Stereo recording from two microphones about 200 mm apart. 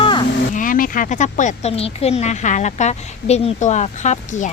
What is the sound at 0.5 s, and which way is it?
A woman's voice, 40° left (ahead or behind).